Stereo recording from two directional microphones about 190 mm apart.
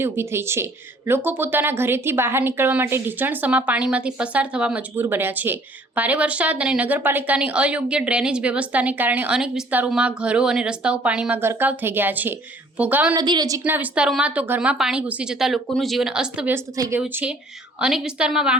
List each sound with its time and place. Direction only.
0.0 s speech: 15° right (ahead or behind)
13.1 s a woman's voice: 20° right (ahead or behind); by 16.6 s 5° right (ahead or behind)
16.7 s speech: 20° right (ahead or behind)
17.0 s a woman's voice: 5° right (ahead or behind)